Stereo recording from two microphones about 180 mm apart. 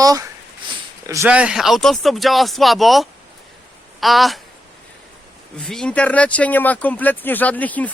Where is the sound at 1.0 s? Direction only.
15° right (ahead or behind).